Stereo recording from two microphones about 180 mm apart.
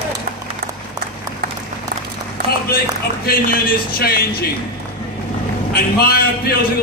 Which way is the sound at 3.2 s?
55° left (ahead or behind).